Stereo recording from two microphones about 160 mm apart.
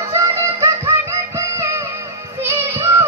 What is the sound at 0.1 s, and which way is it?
Music, 15° right (ahead or behind).